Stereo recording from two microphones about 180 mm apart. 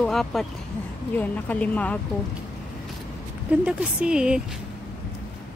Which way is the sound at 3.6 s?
5° right (ahead or behind).